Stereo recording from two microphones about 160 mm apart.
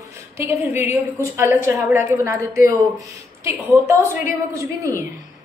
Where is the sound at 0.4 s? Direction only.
20° right (ahead or behind).